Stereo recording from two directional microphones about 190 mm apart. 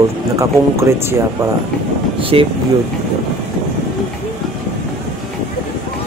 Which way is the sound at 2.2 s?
30° right (ahead or behind).